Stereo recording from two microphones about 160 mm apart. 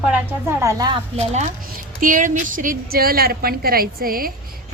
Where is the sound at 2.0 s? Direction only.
55° right (ahead or behind).